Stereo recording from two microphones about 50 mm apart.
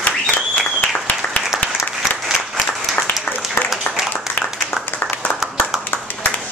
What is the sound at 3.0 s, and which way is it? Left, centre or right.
Applause, left.